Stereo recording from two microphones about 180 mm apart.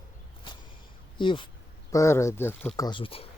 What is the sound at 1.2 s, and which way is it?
Speech, 25° left (ahead or behind).